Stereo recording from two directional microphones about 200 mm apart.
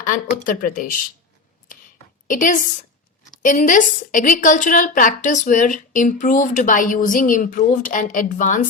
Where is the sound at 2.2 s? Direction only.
40° left (ahead or behind).